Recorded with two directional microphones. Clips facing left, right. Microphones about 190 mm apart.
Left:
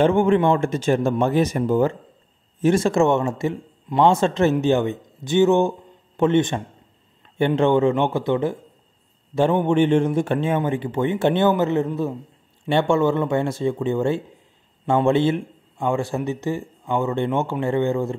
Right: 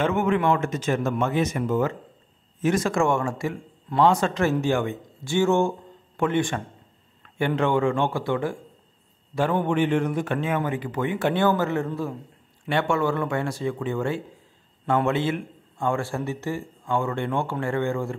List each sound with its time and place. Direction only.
0.0 s a man's voice: 30° left (ahead or behind)